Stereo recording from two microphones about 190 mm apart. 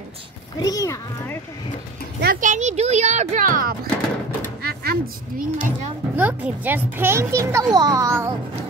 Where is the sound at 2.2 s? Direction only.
45° right (ahead or behind).